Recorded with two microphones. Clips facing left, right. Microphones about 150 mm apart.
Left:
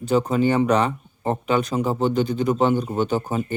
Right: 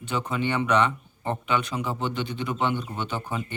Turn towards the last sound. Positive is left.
turn(degrees=40)  # may be behind; listen again after turning